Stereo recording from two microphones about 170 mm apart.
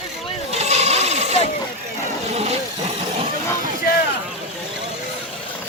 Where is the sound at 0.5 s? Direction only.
40° right (ahead or behind).